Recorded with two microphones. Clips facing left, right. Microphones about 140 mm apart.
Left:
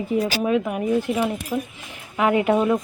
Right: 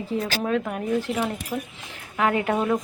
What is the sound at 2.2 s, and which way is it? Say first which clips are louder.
Speech: left 4 dB; 15° left (ahead or behind).